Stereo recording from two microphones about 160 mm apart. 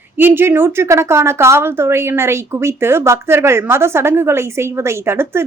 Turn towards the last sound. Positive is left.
turn(degrees=-15)  # may be behind; listen again after turning